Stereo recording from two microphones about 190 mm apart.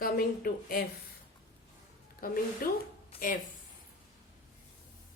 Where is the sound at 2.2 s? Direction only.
50° left (ahead or behind).